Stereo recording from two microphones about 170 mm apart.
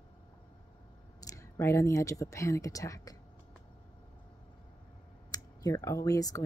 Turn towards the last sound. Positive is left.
turn(degrees=20)  # may be behind; listen again after turning